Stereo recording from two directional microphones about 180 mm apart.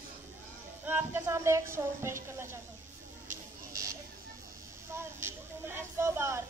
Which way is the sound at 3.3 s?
20° right (ahead or behind).